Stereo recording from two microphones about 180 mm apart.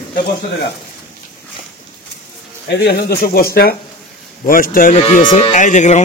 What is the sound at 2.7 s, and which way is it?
Speech, 65° left (ahead or behind).